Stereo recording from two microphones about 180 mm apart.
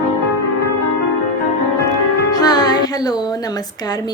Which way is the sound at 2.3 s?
20° left (ahead or behind).